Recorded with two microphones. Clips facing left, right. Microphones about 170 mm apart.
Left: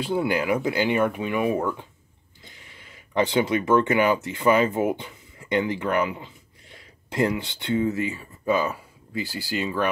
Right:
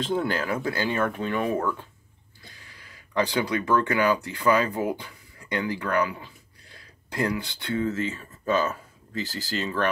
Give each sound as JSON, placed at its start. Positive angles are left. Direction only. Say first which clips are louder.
{"t": 0.0, "sound": "speech", "louder": "left 2 dB", "side_deg": 10}